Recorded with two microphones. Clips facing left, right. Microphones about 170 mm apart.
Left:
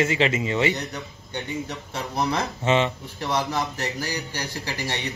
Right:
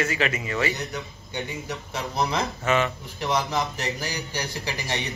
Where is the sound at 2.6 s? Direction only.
25° left (ahead or behind).